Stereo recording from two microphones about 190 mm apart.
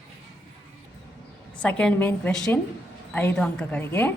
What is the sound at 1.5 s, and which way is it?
A woman's voice, 5° left (ahead or behind).